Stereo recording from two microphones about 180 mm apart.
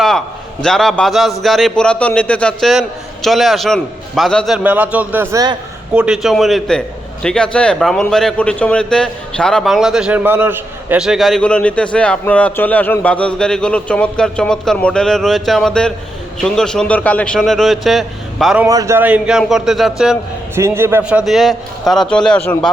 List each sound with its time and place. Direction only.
0.6 s a man's voice: centre (ahead or behind); by 5.5 s 20° right (ahead or behind)
5.9 s a man's voice: 5° right (ahead or behind)
18.6 s a man's voice: 15° right (ahead or behind); by 20.1 s centre (ahead or behind)
20.6 s a man's voice: 15° right (ahead or behind); by 22.7 s 5° left (ahead or behind)